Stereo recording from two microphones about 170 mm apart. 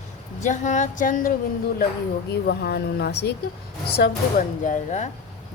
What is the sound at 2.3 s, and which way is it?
Speech, 70° left (ahead or behind).